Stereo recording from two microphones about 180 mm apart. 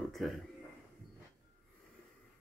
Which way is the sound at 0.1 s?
Centre (ahead or behind).